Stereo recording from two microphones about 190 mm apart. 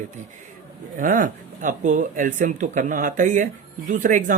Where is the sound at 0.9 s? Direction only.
45° right (ahead or behind).